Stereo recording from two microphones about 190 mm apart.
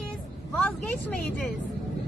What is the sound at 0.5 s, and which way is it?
Speech, 5° left (ahead or behind).